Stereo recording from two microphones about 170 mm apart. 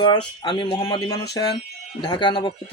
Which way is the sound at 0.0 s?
25° left (ahead or behind).